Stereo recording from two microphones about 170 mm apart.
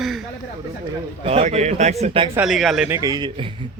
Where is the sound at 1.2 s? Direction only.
40° right (ahead or behind).